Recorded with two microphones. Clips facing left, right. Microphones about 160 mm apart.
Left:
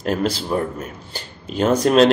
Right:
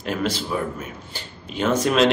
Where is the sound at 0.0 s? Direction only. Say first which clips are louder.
Left 4 dB; 45° left (ahead or behind).